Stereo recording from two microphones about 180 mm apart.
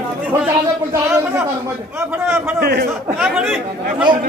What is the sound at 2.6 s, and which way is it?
Speech, 60° right (ahead or behind).